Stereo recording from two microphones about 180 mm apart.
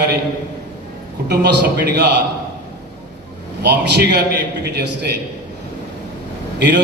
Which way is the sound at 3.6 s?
65° right (ahead or behind).